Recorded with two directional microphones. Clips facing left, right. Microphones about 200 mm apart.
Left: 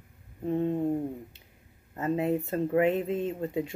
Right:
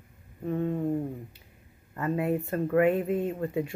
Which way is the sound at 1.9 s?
25° left (ahead or behind).